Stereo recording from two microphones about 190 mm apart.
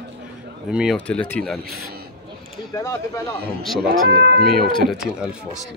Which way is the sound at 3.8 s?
60° right (ahead or behind).